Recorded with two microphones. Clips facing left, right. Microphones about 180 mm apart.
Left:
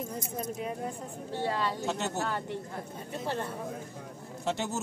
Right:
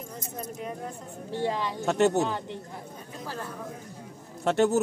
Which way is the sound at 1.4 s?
15° right (ahead or behind).